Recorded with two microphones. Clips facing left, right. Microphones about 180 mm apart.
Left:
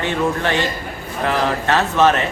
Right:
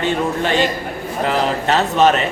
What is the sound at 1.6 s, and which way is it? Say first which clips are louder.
Speech: right 1 dB; 20° right (ahead or behind).